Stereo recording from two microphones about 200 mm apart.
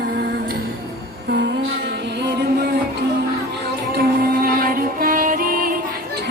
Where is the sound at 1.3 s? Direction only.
60° right (ahead or behind).